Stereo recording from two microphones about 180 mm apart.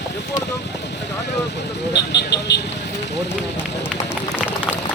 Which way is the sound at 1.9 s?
75° left (ahead or behind).